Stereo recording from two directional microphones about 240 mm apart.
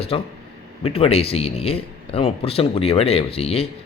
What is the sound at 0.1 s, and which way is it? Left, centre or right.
Speech, left.